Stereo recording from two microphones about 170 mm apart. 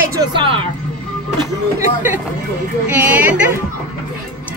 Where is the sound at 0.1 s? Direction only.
25° right (ahead or behind).